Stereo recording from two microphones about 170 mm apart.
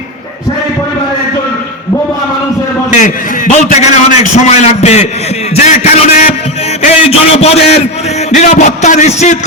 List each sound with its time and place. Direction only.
2.9 s a man's voice: 45° left (ahead or behind)